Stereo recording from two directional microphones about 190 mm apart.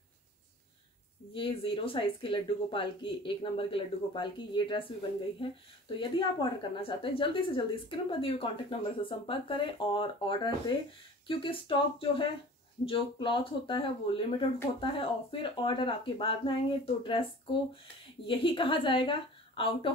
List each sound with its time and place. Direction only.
1.3 s a woman's voice: 25° left (ahead or behind)
18.2 s a woman's voice: 25° left (ahead or behind)